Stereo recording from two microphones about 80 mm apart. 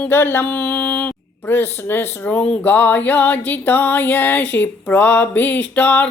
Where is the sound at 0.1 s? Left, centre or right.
Left.